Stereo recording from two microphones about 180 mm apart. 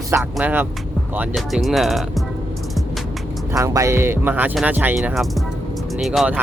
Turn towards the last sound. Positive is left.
turn(degrees=-5)  # may be behind; listen again after turning